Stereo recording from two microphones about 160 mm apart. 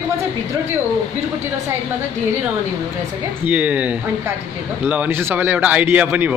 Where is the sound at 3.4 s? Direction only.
10° right (ahead or behind).